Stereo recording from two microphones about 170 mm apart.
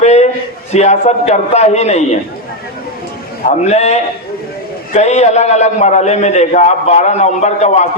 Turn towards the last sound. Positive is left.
turn(degrees=40)  # may be behind; listen again after turning